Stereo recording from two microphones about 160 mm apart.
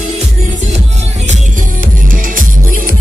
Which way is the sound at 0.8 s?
45° right (ahead or behind).